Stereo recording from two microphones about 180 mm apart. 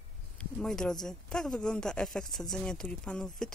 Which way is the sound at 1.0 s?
5° left (ahead or behind).